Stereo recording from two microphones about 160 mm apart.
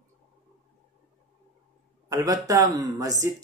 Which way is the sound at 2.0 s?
20° right (ahead or behind).